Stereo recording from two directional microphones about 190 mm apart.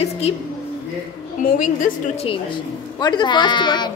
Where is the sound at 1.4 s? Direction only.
45° left (ahead or behind).